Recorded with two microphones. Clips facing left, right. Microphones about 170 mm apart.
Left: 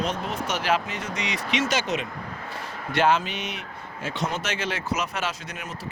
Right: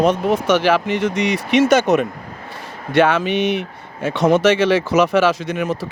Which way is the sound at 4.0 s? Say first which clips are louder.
Right 15 dB; 65° right (ahead or behind).